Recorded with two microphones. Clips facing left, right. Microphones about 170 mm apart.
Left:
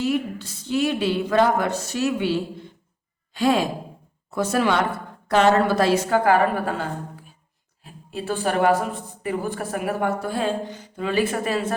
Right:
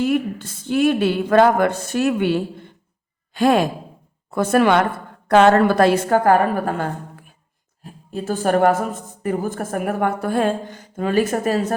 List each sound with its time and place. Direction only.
0.0 s a woman's voice: 55° right (ahead or behind)
7.9 s speech: 45° right (ahead or behind)